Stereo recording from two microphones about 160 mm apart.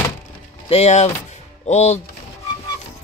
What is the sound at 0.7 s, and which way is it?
Speech, 45° left (ahead or behind).